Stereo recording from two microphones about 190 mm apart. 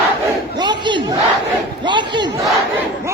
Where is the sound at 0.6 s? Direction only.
25° right (ahead or behind).